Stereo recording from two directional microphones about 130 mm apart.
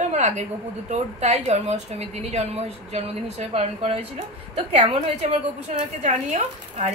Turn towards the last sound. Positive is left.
turn(degrees=-60)  # may be behind; listen again after turning